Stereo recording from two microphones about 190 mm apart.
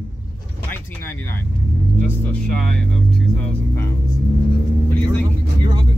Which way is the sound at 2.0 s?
5° left (ahead or behind).